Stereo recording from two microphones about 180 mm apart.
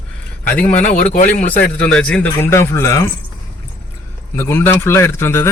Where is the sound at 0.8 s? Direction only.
40° left (ahead or behind).